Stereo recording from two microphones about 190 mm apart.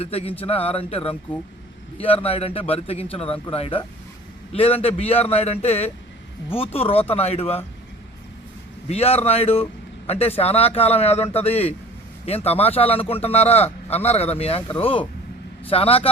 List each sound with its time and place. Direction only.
0.0 s a man's voice: 30° left (ahead or behind)
8.9 s a man's voice: 30° left (ahead or behind)